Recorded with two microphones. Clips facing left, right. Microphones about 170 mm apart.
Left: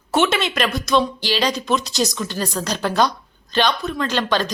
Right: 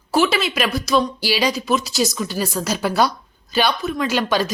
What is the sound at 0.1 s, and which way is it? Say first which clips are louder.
A woman's voice: right 1 dB; centre (ahead or behind).